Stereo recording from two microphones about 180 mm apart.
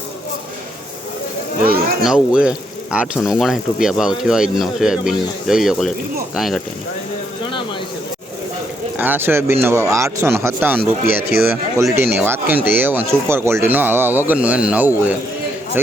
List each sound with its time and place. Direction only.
1.6 s speech: 55° right (ahead or behind)
2.0 s speech: 5° right (ahead or behind)
9.0 s speech: 10° right (ahead or behind)